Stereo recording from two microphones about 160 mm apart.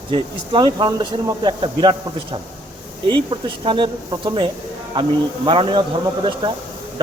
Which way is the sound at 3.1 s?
30° right (ahead or behind).